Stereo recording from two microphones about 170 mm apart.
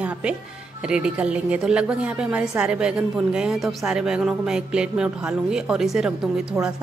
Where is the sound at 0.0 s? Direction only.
5° right (ahead or behind).